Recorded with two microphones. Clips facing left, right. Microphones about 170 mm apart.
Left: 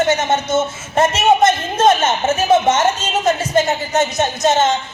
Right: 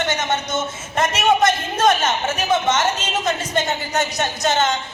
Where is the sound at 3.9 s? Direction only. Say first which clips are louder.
Left 6 dB; 25° left (ahead or behind).